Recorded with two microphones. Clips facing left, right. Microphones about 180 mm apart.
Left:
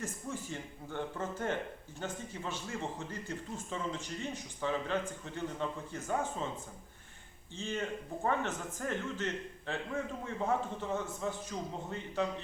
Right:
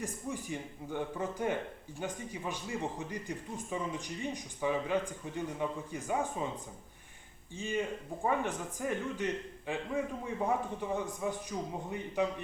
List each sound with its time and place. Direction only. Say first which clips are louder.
0.0 s speech: right 2 dB; 15° right (ahead or behind)
7.5 s speech: right 2 dB; 10° right (ahead or behind)